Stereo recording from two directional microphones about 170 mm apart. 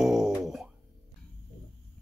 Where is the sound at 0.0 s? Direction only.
5° right (ahead or behind).